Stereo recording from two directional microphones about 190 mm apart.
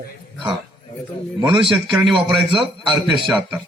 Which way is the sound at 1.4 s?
25° right (ahead or behind).